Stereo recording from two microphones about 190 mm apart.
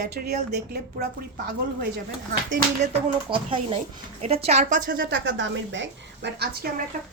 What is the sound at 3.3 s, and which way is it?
A woman's voice, 30° right (ahead or behind).